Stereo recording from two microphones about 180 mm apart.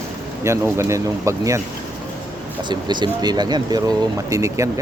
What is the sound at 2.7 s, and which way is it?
Speech, 25° right (ahead or behind).